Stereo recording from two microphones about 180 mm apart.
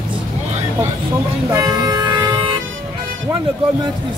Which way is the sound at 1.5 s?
20° right (ahead or behind).